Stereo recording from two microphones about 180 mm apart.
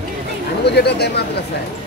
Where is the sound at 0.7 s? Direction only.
65° left (ahead or behind).